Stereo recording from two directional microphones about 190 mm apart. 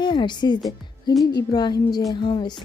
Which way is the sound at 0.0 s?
25° left (ahead or behind).